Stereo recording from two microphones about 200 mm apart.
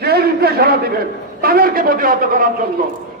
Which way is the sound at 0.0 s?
50° right (ahead or behind).